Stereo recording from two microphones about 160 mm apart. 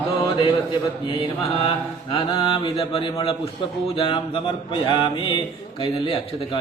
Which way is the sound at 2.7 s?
35° left (ahead or behind).